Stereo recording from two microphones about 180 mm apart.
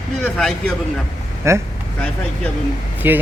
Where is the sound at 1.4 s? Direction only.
15° right (ahead or behind).